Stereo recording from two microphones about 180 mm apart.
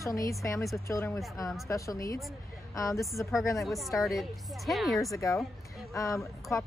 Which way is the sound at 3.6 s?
Centre (ahead or behind).